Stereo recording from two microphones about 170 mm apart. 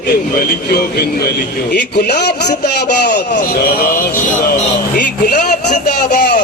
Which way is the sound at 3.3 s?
55° left (ahead or behind).